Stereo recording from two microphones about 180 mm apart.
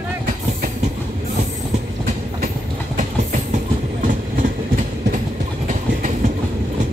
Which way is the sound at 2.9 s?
45° right (ahead or behind).